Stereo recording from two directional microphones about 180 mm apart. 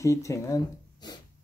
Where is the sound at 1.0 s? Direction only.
25° left (ahead or behind).